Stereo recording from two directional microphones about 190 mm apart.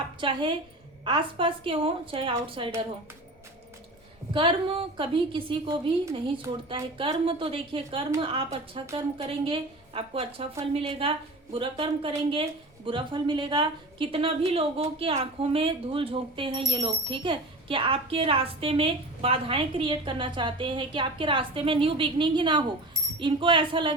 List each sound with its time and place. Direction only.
0.2 s speech: 25° right (ahead or behind)
4.4 s speech: 30° right (ahead or behind)